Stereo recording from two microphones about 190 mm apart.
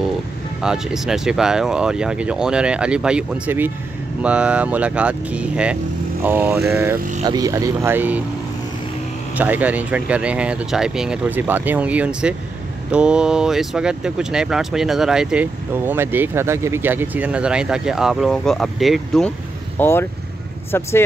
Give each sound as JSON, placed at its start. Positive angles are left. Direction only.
{"t": 0.6, "sound": "speech", "side_deg": 0}
{"t": 7.0, "sound": "speech", "side_deg": -40}
{"t": 7.2, "sound": "speech", "side_deg": -20}
{"t": 9.4, "sound": "speech", "side_deg": -10}
{"t": 19.8, "sound": "speech", "side_deg": 10}